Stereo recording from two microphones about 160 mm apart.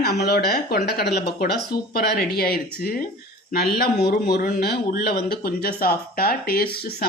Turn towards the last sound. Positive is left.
turn(degrees=75)  # may be behind; listen again after turning